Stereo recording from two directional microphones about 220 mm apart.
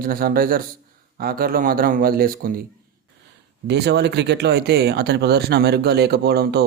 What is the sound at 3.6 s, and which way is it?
Speech, 50° right (ahead or behind).